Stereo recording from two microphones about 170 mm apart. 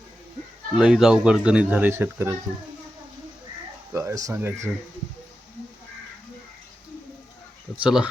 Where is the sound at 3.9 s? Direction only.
15° right (ahead or behind).